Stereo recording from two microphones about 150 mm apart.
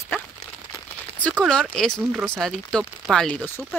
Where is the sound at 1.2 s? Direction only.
5° left (ahead or behind).